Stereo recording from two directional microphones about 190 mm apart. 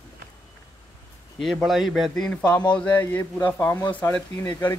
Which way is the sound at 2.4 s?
20° left (ahead or behind).